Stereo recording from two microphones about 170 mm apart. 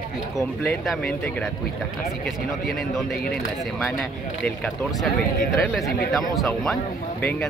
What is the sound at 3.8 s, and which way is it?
Speech, 5° left (ahead or behind).